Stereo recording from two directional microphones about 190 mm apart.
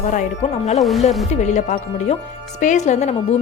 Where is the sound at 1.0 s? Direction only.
35° left (ahead or behind).